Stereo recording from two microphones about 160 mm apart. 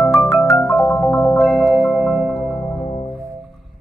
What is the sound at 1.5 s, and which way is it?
Music, centre (ahead or behind).